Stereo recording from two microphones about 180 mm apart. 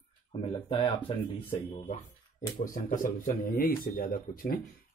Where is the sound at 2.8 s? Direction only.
50° left (ahead or behind).